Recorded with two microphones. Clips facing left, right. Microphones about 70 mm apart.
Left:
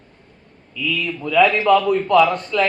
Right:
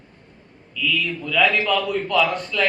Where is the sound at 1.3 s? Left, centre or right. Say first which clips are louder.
Left 6 dB; left.